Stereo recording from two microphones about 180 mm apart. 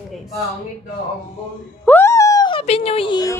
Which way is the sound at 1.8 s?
15° left (ahead or behind).